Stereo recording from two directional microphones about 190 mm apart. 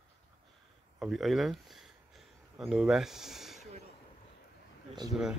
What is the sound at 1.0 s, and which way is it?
Speech, centre (ahead or behind).